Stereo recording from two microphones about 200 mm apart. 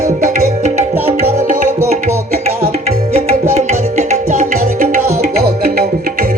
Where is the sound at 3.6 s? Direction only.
35° right (ahead or behind).